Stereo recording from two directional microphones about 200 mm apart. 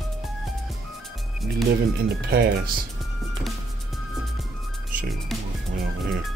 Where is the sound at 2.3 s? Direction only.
50° right (ahead or behind).